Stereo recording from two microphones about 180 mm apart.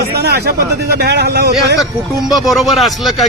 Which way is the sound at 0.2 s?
65° right (ahead or behind).